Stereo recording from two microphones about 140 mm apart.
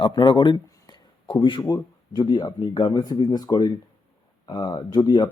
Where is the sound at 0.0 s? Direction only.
35° left (ahead or behind).